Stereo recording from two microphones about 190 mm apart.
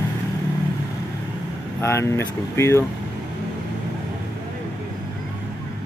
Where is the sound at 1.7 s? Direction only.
15° left (ahead or behind).